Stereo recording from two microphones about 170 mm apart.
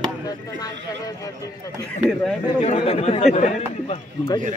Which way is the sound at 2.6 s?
35° left (ahead or behind).